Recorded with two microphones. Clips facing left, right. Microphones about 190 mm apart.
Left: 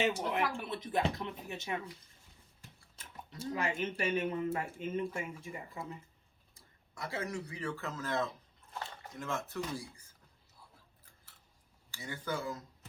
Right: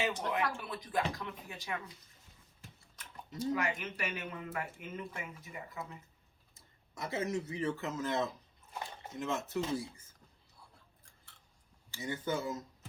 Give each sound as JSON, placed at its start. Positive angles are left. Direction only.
{"t": 0.3, "sound": "speech", "side_deg": 25}
{"t": 2.9, "sound": "speech", "side_deg": 25}
{"t": 6.5, "sound": "speech", "side_deg": -20}
{"t": 11.9, "sound": "speech", "side_deg": -20}